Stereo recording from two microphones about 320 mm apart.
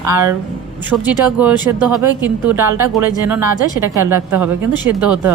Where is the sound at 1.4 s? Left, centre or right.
Centre.